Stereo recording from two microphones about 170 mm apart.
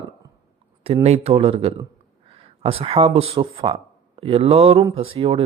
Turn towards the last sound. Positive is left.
turn(degrees=-35)  # may be behind; listen again after turning